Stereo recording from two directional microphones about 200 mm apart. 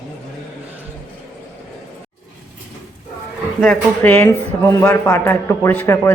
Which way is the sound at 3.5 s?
10° left (ahead or behind).